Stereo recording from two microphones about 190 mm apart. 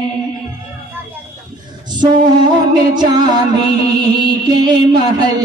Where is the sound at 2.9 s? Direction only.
20° right (ahead or behind).